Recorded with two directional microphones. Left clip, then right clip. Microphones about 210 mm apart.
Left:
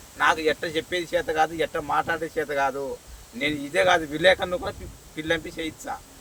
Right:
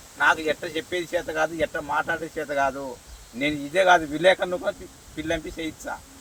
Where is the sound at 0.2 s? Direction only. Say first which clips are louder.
Even; 25° left (ahead or behind).